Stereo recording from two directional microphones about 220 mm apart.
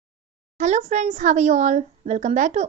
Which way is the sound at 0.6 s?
30° right (ahead or behind).